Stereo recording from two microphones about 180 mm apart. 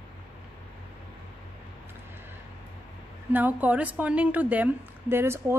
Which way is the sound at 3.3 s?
10° right (ahead or behind).